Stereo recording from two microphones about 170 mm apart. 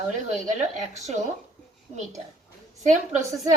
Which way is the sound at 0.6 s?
45° right (ahead or behind).